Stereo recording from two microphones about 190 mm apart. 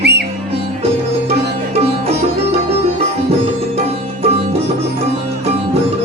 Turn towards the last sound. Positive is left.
turn(degrees=-35)  # may be behind; listen again after turning